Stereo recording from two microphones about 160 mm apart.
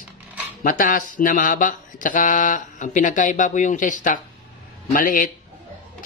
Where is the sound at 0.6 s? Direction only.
60° left (ahead or behind).